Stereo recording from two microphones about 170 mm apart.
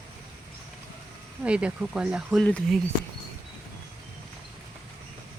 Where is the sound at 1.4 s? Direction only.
5° right (ahead or behind).